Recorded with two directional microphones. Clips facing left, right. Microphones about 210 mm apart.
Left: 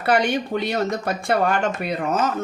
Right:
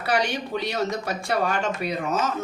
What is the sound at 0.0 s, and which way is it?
Speech, 55° left (ahead or behind).